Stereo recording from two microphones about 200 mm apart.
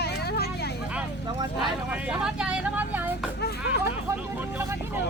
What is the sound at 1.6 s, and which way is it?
Speech, 5° right (ahead or behind).